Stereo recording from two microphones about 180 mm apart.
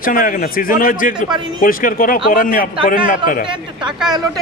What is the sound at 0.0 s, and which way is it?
Speech, 50° left (ahead or behind).